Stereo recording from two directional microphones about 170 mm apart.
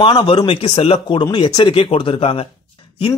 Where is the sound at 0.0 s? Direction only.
30° left (ahead or behind).